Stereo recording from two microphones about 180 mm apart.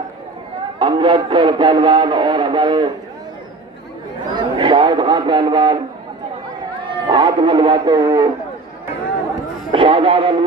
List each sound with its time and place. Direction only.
0.7 s music: 25° right (ahead or behind)
4.4 s a man's voice: 25° right (ahead or behind)
6.8 s speech: 25° right (ahead or behind)
9.7 s music: 30° right (ahead or behind)